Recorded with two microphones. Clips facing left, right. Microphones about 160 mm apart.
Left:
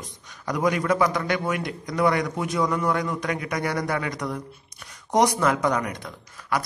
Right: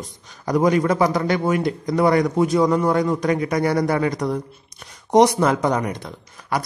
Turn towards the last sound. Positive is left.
turn(degrees=-30)  # may be behind; listen again after turning